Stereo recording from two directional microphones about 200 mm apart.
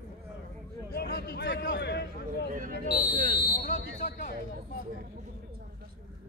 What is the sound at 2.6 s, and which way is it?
Buzzer, 40° right (ahead or behind).